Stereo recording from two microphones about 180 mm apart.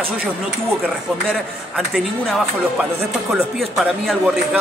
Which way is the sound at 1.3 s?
Centre (ahead or behind).